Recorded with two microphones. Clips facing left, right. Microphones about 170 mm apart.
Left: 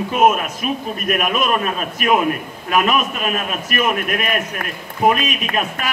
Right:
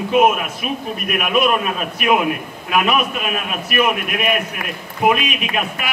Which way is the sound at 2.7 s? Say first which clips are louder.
Even; 40° left (ahead or behind).